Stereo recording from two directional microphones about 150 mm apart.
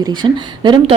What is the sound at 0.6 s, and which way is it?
Speech, 30° right (ahead or behind).